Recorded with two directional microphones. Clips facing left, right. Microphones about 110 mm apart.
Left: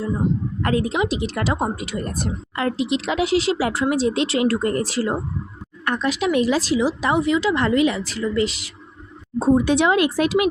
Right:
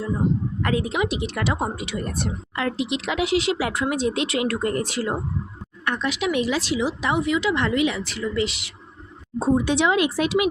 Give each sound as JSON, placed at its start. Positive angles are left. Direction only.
{"t": 0.6, "sound": "a woman's voice", "side_deg": 40}
{"t": 9.6, "sound": "speech", "side_deg": 50}